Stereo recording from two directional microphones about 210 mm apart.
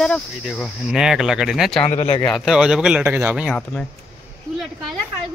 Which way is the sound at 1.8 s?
30° left (ahead or behind).